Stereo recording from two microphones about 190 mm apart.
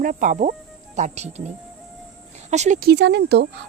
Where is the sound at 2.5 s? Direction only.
35° right (ahead or behind).